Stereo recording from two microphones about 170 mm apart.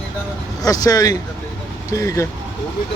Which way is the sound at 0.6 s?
20° left (ahead or behind).